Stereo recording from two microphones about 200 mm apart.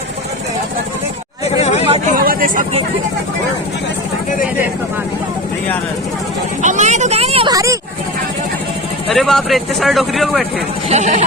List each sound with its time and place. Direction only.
1.5 s chatter: 35° left (ahead or behind)
2.1 s vehicle: 45° right (ahead or behind)
6.6 s speech: 40° right (ahead or behind)
7.5 s speech: 15° right (ahead or behind)
9.0 s speech: centre (ahead or behind)
10.8 s speech: 35° right (ahead or behind)